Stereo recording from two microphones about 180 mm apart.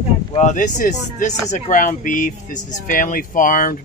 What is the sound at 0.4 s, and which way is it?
Speech, 45° left (ahead or behind).